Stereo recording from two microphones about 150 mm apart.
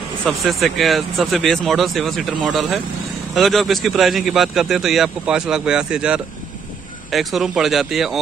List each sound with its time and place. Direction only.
0.2 s speech: centre (ahead or behind)